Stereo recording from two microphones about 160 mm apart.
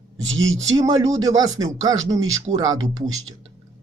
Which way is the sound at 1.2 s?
20° right (ahead or behind).